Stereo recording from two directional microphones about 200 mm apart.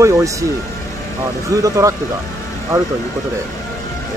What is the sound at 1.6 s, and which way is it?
Speech, 15° right (ahead or behind).